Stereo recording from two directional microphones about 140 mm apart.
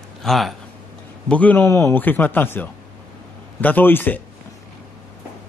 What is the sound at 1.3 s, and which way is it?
Speech, 10° left (ahead or behind).